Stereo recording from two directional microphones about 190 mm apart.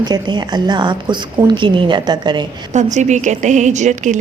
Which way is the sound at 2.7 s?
40° right (ahead or behind).